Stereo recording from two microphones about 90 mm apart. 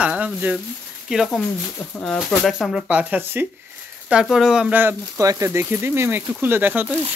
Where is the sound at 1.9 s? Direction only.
10° left (ahead or behind).